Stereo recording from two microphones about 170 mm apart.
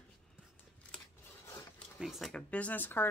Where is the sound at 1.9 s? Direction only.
Centre (ahead or behind).